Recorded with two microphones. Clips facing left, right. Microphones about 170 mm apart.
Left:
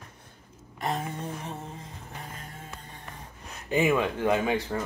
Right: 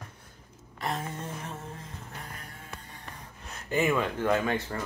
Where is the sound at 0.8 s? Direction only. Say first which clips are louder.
Left 2 dB; 15° left (ahead or behind).